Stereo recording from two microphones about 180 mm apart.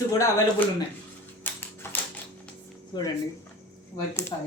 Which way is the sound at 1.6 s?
10° left (ahead or behind).